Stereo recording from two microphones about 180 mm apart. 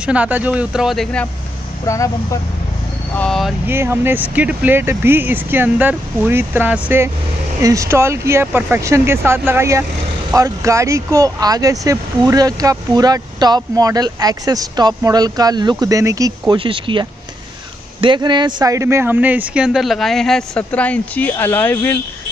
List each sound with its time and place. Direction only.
0.0 s speech: 5° right (ahead or behind)
1.9 s speech: 15° left (ahead or behind)
3.2 s speech: centre (ahead or behind)
3.6 s speech: 10° right (ahead or behind); by 22.0 s 10° left (ahead or behind)